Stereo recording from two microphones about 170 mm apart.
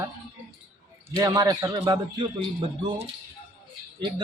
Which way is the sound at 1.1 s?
20° right (ahead or behind).